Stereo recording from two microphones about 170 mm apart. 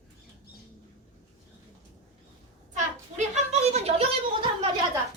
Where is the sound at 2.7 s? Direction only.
40° right (ahead or behind).